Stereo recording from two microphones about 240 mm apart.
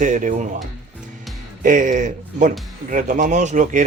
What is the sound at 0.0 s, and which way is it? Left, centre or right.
Speech, right.